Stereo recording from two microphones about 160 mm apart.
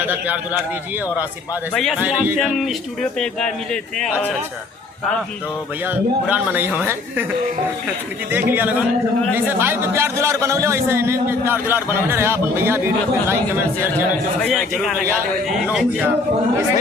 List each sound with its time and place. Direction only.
0.0 s a man's voice: 10° right (ahead or behind)
1.7 s speech: centre (ahead or behind)
2.0 s a man's voice: 10° right (ahead or behind)
5.8 s a man's voice: 10° right (ahead or behind)
8.3 s a man's voice: 10° right (ahead or behind)
14.4 s speech: centre (ahead or behind)